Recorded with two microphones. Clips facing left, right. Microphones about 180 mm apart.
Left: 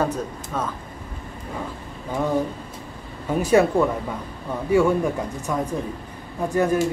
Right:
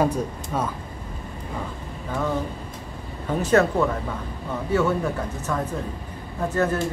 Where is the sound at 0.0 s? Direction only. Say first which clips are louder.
Right 2 dB; 10° right (ahead or behind).